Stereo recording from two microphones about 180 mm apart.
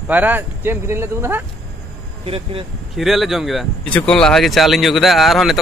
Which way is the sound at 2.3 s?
30° right (ahead or behind).